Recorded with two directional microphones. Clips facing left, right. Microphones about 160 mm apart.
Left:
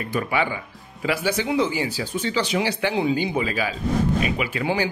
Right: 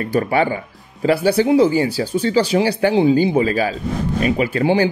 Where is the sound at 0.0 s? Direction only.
45° right (ahead or behind).